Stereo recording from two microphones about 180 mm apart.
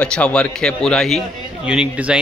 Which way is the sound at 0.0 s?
5° left (ahead or behind).